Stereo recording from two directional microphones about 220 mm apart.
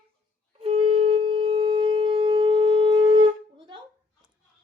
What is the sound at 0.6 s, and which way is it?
Wind instrument, 25° right (ahead or behind).